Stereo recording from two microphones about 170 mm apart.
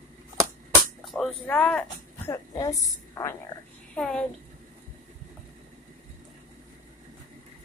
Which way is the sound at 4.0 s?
5° left (ahead or behind).